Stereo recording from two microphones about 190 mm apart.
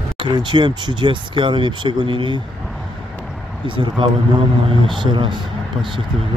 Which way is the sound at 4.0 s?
25° right (ahead or behind).